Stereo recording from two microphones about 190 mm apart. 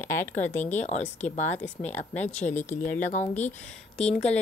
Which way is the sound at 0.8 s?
35° left (ahead or behind).